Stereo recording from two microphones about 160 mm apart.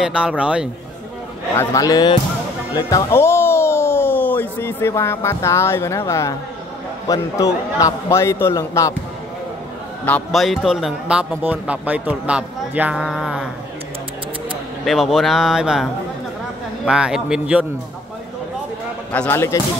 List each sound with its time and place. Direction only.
0.0 s a man's voice: 5° right (ahead or behind)
1.5 s a man's voice: 20° left (ahead or behind)
10.0 s a man's voice: 5° left (ahead or behind)
14.9 s a man's voice: centre (ahead or behind)
19.1 s speech: 15° left (ahead or behind)